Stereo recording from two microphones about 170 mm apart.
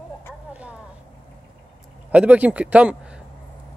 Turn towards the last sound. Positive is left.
turn(degrees=-5)  # may be behind; listen again after turning